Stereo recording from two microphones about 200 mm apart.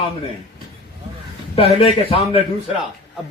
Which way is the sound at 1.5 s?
30° left (ahead or behind).